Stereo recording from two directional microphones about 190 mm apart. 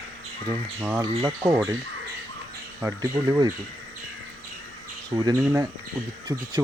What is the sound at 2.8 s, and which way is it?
Speech, 15° right (ahead or behind).